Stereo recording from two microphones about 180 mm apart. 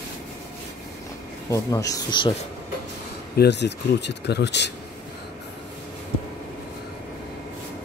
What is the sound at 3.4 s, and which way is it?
Speech, 70° left (ahead or behind).